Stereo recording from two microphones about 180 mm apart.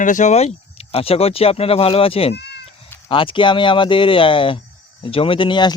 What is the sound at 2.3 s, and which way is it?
Cat, 70° left (ahead or behind).